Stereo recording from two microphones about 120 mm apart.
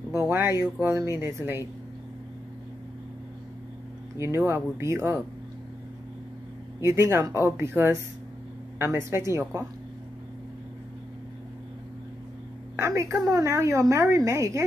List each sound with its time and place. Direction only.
0.1 s a woman's voice: 20° right (ahead or behind)
4.5 s a woman's voice: 20° right (ahead or behind)
6.8 s a woman's voice: 25° right (ahead or behind)
12.8 s a woman's voice: 25° right (ahead or behind)